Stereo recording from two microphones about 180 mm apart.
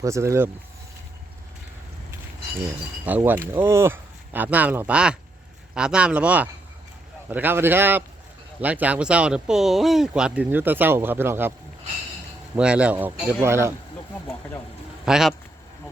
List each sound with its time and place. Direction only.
0.0 s speech: 15° right (ahead or behind)
3.1 s speech: 10° right (ahead or behind)
12.5 s speech: 5° right (ahead or behind)
15.0 s speech: centre (ahead or behind)